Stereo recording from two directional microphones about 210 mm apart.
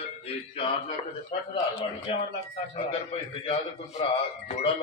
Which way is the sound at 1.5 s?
25° left (ahead or behind).